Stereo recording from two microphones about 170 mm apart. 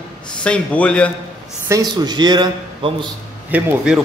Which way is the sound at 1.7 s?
25° right (ahead or behind).